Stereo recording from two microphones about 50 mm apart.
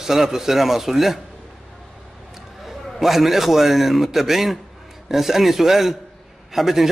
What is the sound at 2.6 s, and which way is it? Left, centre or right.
A man's voice, centre.